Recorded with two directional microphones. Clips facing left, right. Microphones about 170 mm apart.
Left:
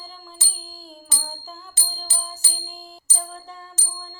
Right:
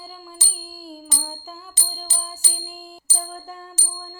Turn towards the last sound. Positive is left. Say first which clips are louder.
# right 3 dB
turn(degrees=-5)  # may be behind; listen again after turning